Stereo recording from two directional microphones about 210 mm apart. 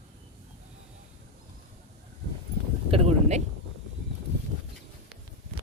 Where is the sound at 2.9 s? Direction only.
30° right (ahead or behind).